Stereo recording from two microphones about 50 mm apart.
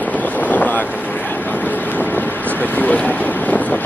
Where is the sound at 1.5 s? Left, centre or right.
Left.